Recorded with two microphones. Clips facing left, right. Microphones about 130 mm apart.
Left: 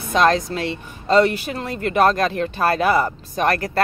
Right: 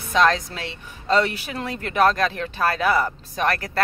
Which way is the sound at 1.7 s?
45° left (ahead or behind).